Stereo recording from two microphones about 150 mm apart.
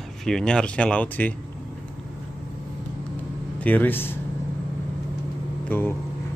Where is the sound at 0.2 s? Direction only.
5° left (ahead or behind).